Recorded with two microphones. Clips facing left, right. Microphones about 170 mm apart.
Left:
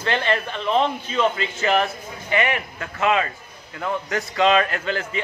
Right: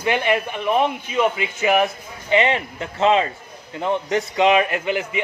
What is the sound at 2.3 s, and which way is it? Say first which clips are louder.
A man's voice: right 4 dB; 25° right (ahead or behind).